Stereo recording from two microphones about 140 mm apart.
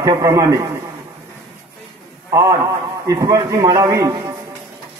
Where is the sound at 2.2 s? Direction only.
25° right (ahead or behind).